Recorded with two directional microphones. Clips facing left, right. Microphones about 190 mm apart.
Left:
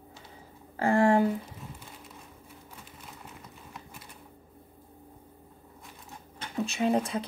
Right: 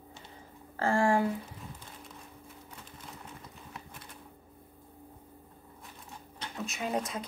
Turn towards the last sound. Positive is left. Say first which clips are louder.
# left 7 dB
turn(degrees=30)  # may be behind; listen again after turning